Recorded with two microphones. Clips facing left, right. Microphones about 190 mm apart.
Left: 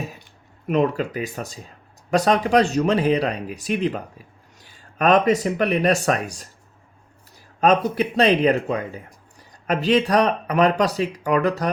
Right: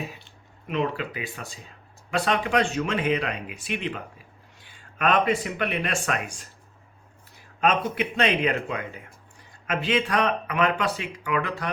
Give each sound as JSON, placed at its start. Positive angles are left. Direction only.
{"t": 0.7, "sound": "speech", "side_deg": 45}